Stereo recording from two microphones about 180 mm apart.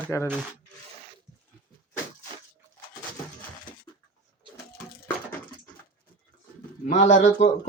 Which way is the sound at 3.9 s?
20° left (ahead or behind).